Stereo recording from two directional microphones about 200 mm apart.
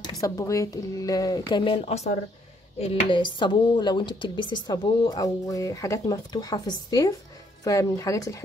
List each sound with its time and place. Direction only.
0.0 s a woman's voice: 15° left (ahead or behind)